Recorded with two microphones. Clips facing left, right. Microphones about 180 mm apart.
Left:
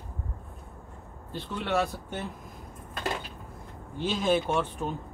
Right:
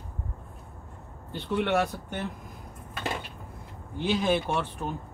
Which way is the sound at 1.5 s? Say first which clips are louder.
Right 3 dB; 65° right (ahead or behind).